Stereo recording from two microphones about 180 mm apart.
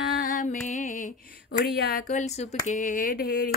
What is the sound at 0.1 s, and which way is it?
Music, 50° left (ahead or behind).